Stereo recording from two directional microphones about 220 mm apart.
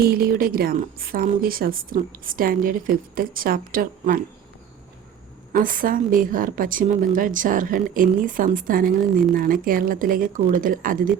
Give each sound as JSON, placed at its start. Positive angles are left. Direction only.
{"t": 0.0, "sound": "a woman's voice", "side_deg": -45}
{"t": 5.5, "sound": "a woman's voice", "side_deg": -40}